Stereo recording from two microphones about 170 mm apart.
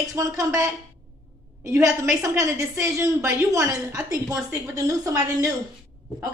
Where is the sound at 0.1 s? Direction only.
20° right (ahead or behind).